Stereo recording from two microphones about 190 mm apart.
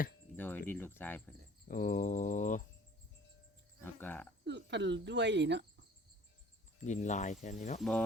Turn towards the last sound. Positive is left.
turn(degrees=40)  # may be behind; listen again after turning